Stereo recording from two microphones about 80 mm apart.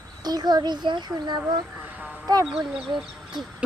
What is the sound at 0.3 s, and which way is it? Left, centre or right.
A child's voice, right.